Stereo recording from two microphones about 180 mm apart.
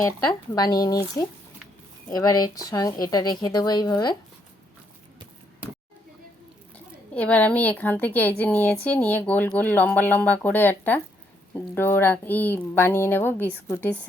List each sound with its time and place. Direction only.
0.5 s speech: 20° left (ahead or behind)
6.7 s a woman's voice: 10° left (ahead or behind)